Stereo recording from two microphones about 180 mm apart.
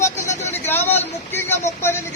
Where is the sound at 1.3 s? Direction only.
15° left (ahead or behind).